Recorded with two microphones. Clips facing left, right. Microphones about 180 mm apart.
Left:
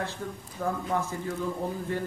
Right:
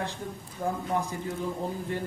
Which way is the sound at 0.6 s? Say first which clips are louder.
Even; 30° right (ahead or behind).